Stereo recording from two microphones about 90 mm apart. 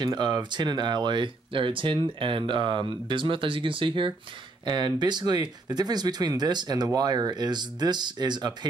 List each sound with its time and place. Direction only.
0.0 s speech: 55° right (ahead or behind)
4.6 s speech: 55° right (ahead or behind)